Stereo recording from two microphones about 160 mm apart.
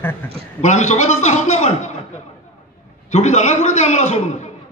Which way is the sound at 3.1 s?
45° left (ahead or behind).